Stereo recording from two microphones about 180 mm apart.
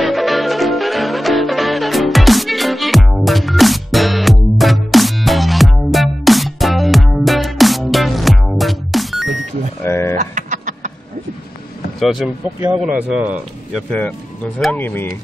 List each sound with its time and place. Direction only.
0.0 s music: centre (ahead or behind)
9.8 s a sound: 15° left (ahead or behind)
10.1 s a sound: 45° right (ahead or behind)
12.0 s vehicle: centre (ahead or behind)
12.5 s speech: 10° right (ahead or behind)
13.8 s speech: 5° left (ahead or behind)